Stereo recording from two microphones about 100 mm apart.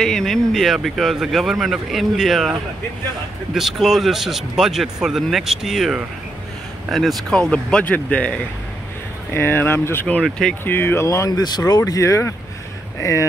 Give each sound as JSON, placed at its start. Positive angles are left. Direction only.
{"t": 0.0, "sound": "speech", "side_deg": 5}
{"t": 3.5, "sound": "speech", "side_deg": -5}